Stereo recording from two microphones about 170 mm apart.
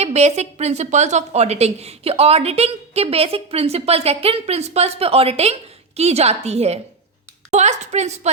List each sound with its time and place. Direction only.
0.0 s a woman's voice: 40° right (ahead or behind)